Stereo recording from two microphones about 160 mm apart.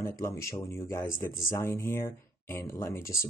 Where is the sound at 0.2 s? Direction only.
15° left (ahead or behind).